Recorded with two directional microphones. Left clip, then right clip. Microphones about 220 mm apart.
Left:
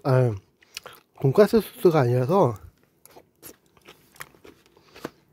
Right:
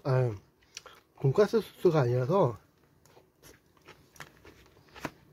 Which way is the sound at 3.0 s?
45° left (ahead or behind).